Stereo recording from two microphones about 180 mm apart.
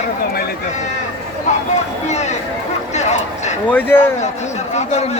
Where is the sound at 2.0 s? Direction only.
40° left (ahead or behind).